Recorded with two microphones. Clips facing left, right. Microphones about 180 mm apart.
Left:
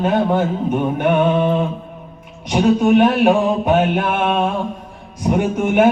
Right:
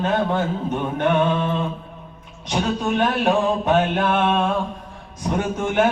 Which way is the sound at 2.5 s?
15° left (ahead or behind).